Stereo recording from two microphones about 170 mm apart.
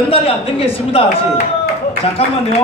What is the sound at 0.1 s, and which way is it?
Speech, 35° left (ahead or behind).